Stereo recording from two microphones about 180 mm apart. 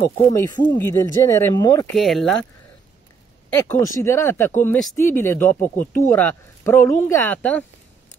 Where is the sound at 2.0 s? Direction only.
Centre (ahead or behind).